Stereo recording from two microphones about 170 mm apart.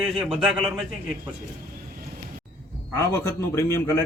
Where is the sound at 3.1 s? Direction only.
15° left (ahead or behind).